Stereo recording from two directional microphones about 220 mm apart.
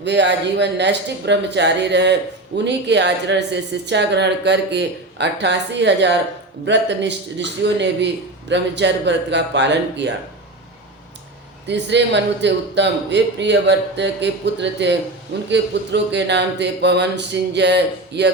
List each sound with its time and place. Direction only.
0.0 s speech: 50° right (ahead or behind)
11.7 s speech: 50° right (ahead or behind)